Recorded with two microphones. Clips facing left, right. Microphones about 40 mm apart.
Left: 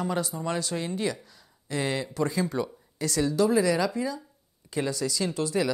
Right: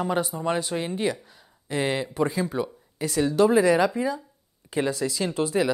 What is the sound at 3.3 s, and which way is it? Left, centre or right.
Speech, right.